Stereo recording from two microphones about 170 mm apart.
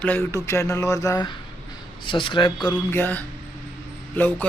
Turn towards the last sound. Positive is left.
turn(degrees=10)  # may be behind; listen again after turning